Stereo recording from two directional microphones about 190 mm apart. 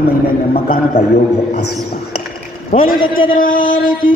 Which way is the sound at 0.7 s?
30° left (ahead or behind).